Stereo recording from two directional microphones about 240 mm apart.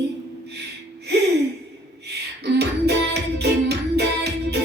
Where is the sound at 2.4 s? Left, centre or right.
Right.